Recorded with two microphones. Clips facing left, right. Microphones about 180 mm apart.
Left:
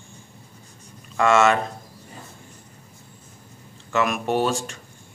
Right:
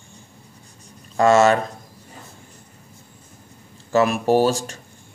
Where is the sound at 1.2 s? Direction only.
35° right (ahead or behind).